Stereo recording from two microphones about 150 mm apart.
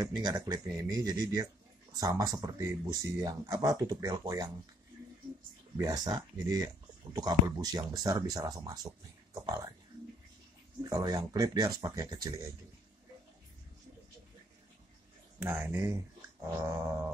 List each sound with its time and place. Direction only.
0.0 s speech: 25° right (ahead or behind)
5.8 s speech: 25° right (ahead or behind)
10.8 s speech: 25° right (ahead or behind)
15.3 s dog: 10° right (ahead or behind)